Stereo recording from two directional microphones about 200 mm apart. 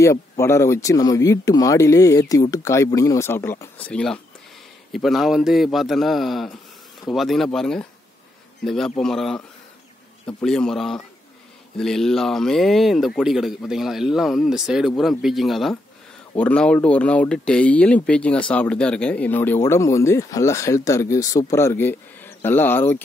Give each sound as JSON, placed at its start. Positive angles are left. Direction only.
{"t": 0.0, "sound": "speech", "side_deg": 15}